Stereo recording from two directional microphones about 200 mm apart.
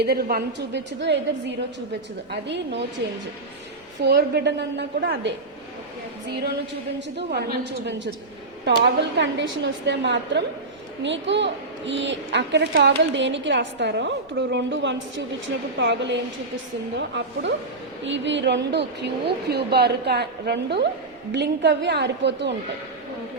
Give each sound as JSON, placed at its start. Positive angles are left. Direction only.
{"t": 0.0, "sound": "a woman's voice", "side_deg": -50}
{"t": 4.0, "sound": "a woman's voice", "side_deg": -55}
{"t": 7.2, "sound": "a woman's voice", "side_deg": -55}
{"t": 18.0, "sound": "a woman's voice", "side_deg": -65}